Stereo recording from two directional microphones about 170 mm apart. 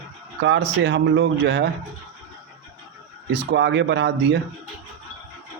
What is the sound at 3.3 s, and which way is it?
Speech, 90° right.